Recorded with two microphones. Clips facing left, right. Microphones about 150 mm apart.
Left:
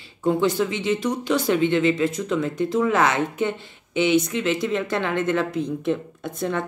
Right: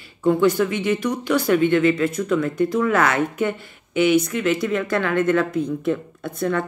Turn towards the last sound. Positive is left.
turn(degrees=20)  # may be behind; listen again after turning